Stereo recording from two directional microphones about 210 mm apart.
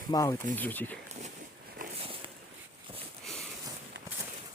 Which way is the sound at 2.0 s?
25° right (ahead or behind).